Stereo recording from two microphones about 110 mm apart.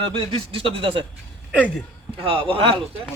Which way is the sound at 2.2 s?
55° right (ahead or behind).